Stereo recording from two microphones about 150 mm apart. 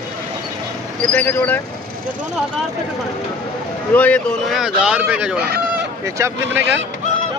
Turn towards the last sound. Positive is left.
turn(degrees=-20)  # may be behind; listen again after turning